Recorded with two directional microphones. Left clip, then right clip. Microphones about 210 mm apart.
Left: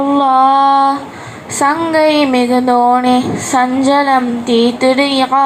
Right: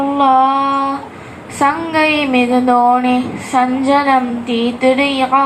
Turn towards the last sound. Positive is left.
turn(degrees=35)  # may be behind; listen again after turning